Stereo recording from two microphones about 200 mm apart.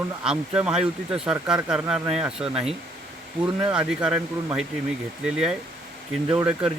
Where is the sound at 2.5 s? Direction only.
30° right (ahead or behind).